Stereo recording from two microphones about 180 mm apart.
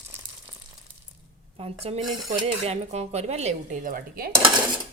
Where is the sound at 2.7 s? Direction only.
35° right (ahead or behind); by 4.3 s 55° right (ahead or behind).